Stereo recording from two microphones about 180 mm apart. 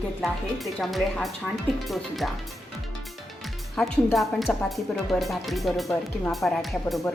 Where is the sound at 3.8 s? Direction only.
5° left (ahead or behind).